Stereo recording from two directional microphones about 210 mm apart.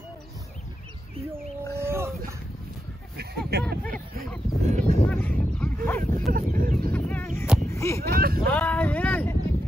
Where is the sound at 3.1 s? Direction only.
50° right (ahead or behind).